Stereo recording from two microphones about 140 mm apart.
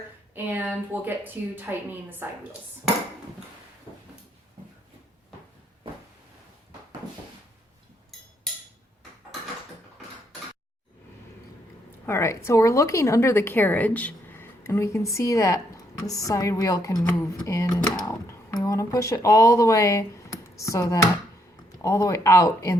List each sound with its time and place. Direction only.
0.3 s a woman's voice: 15° right (ahead or behind)
12.0 s a woman's voice: 20° left (ahead or behind)